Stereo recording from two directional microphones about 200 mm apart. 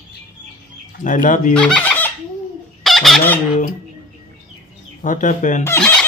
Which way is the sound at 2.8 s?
Centre (ahead or behind).